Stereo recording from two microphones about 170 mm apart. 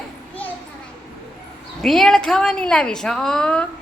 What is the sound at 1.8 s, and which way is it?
Speech, centre (ahead or behind).